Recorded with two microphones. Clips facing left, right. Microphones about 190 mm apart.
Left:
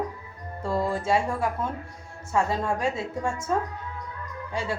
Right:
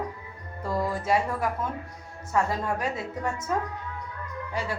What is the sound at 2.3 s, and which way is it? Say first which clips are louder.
Speech: left 1 dB; 20° left (ahead or behind).